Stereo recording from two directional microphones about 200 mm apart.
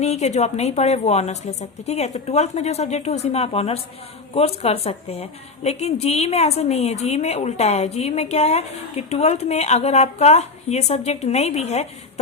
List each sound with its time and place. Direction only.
0.0 s a woman's voice: 35° left (ahead or behind)